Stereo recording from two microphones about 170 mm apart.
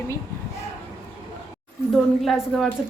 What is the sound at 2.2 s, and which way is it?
Speech, centre (ahead or behind).